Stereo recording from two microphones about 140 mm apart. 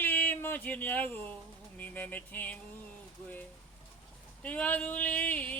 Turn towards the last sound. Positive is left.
turn(degrees=10)  # may be behind; listen again after turning